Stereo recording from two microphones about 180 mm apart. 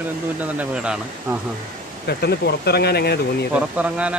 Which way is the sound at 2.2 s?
65° left (ahead or behind).